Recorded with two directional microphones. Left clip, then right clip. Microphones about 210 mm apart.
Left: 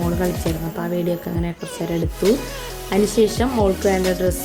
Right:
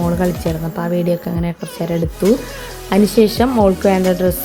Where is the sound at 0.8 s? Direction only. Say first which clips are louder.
Right 6 dB; 15° right (ahead or behind).